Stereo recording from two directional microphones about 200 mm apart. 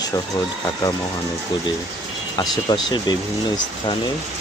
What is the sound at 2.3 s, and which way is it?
Speech, 20° left (ahead or behind).